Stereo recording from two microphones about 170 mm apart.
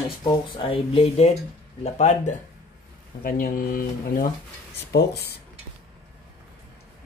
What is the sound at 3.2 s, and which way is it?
Speech, 55° left (ahead or behind).